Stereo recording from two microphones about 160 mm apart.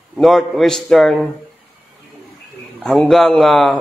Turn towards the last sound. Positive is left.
turn(degrees=0)  # may be behind; listen again after turning